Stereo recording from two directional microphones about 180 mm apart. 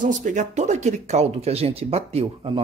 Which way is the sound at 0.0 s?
45° right (ahead or behind).